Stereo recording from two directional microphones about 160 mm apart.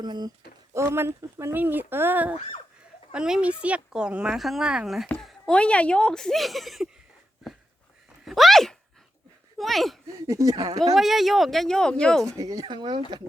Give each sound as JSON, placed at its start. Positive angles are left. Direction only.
{"t": 0.0, "sound": "speech", "side_deg": -25}
{"t": 0.7, "sound": "speech", "side_deg": -15}
{"t": 8.2, "sound": "a sound", "side_deg": 0}
{"t": 9.6, "sound": "speech", "side_deg": 0}
{"t": 10.1, "sound": "speech", "side_deg": -20}
{"t": 10.9, "sound": "speech", "side_deg": 0}
{"t": 12.4, "sound": "speech", "side_deg": -20}